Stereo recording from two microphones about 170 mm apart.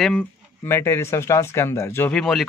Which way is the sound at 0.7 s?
15° left (ahead or behind).